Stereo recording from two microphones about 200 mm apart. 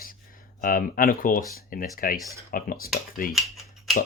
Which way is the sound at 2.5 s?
45° left (ahead or behind).